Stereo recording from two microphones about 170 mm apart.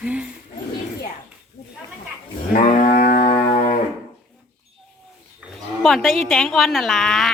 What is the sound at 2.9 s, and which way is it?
Music, 55° left (ahead or behind).